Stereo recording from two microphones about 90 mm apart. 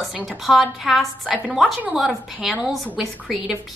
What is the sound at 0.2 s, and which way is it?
A woman's voice, centre (ahead or behind).